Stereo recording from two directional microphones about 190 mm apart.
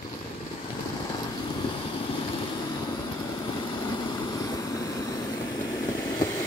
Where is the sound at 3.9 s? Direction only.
20° left (ahead or behind).